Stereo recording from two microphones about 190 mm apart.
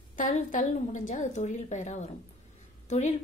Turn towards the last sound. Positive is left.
turn(degrees=40)  # may be behind; listen again after turning